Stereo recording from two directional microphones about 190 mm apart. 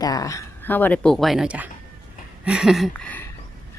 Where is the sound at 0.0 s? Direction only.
20° left (ahead or behind); by 1.7 s 5° right (ahead or behind).